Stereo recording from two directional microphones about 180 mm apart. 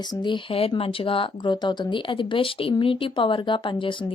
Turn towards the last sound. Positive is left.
turn(degrees=30)  # may be behind; listen again after turning